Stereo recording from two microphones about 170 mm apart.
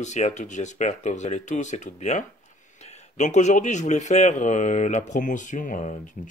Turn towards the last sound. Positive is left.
turn(degrees=45)  # may be behind; listen again after turning